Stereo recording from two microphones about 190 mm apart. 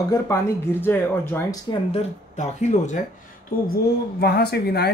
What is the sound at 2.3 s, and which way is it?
Speech, 40° left (ahead or behind).